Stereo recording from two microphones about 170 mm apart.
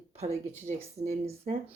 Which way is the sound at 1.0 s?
35° right (ahead or behind).